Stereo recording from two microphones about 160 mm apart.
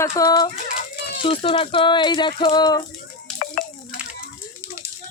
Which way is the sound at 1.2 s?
35° left (ahead or behind).